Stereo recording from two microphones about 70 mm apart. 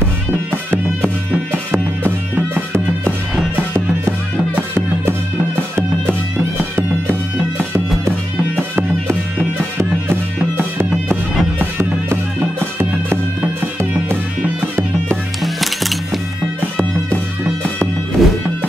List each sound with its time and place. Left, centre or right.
1.7 s music: right
5.6 s music: right
11.8 s music: right
15.4 s music: centre
18.2 s music: centre